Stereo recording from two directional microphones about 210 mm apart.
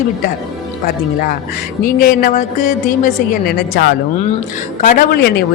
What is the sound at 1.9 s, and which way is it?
A woman's voice, 45° left (ahead or behind).